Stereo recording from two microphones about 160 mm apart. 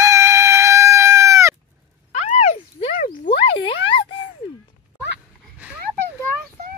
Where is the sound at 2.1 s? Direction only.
45° left (ahead or behind).